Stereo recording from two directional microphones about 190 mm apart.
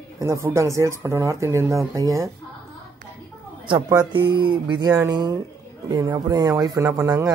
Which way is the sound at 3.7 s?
20° right (ahead or behind).